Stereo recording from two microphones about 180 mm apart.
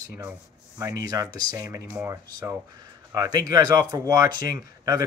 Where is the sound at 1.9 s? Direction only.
10° right (ahead or behind).